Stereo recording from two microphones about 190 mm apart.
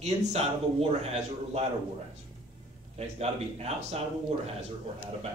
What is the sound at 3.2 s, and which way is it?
Speech, 35° right (ahead or behind).